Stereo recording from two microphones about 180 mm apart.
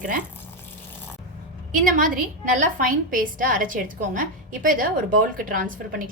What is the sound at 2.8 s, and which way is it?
A woman's voice, 50° right (ahead or behind).